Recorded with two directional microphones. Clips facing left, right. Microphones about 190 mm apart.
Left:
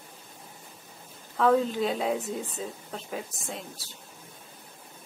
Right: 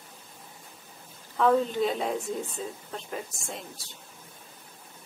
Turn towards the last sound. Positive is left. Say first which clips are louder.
# left 1 dB
turn(degrees=0)  # may be behind; listen again after turning